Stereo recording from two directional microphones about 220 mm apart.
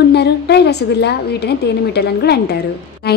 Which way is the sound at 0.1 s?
50° left (ahead or behind).